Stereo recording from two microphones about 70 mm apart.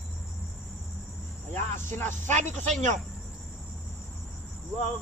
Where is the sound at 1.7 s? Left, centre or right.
Left.